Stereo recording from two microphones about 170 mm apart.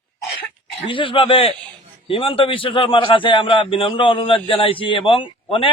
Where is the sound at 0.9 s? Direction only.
30° left (ahead or behind).